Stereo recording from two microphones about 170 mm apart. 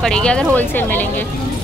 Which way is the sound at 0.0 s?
5° left (ahead or behind).